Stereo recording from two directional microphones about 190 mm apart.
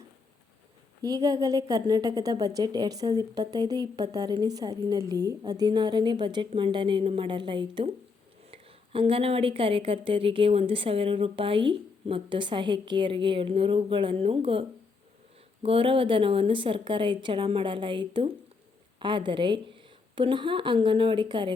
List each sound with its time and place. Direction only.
1.0 s a woman's voice: 20° right (ahead or behind)